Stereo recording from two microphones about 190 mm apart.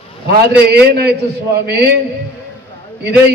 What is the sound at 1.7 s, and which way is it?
Speech, 60° right (ahead or behind).